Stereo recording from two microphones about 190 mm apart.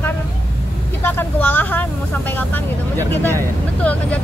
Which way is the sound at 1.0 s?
10° left (ahead or behind).